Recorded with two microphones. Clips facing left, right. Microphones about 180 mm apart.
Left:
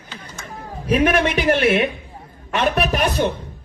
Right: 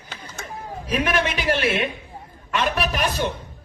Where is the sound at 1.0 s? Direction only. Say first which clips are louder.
Left 5 dB; 60° left (ahead or behind).